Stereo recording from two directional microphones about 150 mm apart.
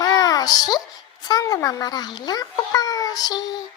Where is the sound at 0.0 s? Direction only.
25° left (ahead or behind).